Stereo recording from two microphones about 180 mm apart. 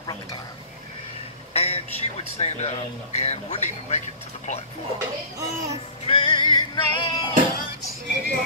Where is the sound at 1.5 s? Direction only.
35° left (ahead or behind).